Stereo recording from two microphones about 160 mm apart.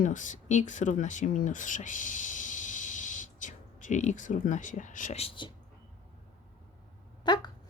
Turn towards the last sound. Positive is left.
turn(degrees=25)  # may be behind; listen again after turning